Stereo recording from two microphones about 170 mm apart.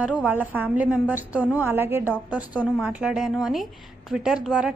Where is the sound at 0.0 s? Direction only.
10° right (ahead or behind).